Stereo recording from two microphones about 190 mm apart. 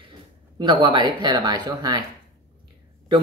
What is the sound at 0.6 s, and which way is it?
Speech, 25° right (ahead or behind).